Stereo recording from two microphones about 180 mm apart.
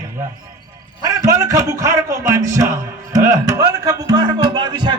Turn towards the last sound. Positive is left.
turn(degrees=-25)  # may be behind; listen again after turning